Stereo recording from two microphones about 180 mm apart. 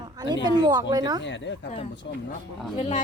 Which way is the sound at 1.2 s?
85° left.